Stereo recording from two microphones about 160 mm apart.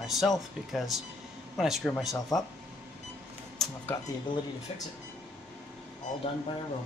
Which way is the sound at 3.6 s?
Centre (ahead or behind).